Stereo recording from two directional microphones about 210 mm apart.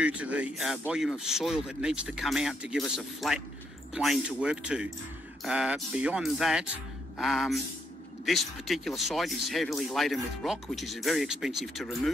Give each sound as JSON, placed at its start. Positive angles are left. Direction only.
{"t": 0.0, "sound": "speech", "side_deg": -5}